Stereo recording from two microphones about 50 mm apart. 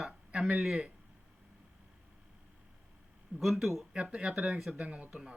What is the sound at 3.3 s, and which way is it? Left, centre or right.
Speech, centre.